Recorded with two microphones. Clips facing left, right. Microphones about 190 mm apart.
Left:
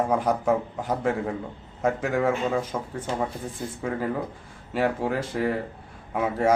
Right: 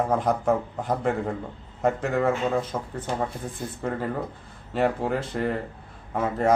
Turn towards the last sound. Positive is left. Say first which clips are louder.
# left 1 dB
turn(degrees=10)  # may be behind; listen again after turning